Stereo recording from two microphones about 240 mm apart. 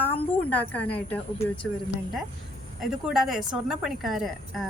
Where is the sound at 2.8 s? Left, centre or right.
Centre.